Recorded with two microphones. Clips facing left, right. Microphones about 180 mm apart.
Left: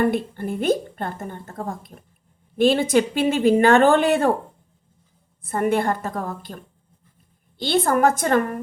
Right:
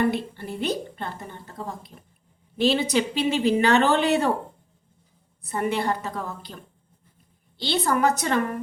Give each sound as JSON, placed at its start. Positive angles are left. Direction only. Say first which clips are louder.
{"t": 0.0, "sound": "a woman's voice", "louder": "left 3 dB", "side_deg": 50}
{"t": 5.4, "sound": "a woman's voice", "louder": "left 5 dB", "side_deg": 50}
{"t": 7.6, "sound": "a woman's voice", "louder": "left 4 dB", "side_deg": 50}